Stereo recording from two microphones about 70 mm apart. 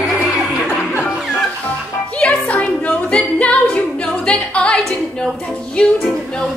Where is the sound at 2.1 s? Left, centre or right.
Centre.